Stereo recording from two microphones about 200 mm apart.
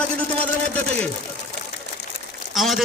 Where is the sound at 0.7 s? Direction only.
5° left (ahead or behind).